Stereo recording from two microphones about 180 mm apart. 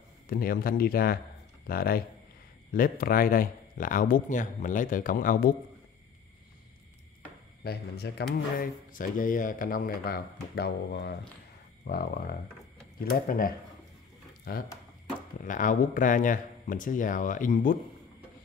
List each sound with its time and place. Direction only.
0.3 s speech: 55° left (ahead or behind)
7.6 s speech: 65° left (ahead or behind)
8.5 s speech: 50° left (ahead or behind)
14.5 s speech: 55° left (ahead or behind)
15.4 s speech: 45° left (ahead or behind)